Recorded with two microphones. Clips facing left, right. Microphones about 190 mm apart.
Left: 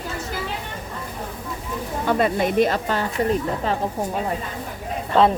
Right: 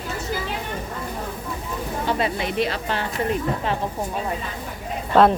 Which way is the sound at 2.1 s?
50° left (ahead or behind).